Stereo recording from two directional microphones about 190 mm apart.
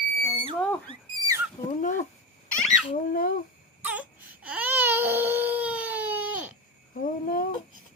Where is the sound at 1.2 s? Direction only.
15° right (ahead or behind).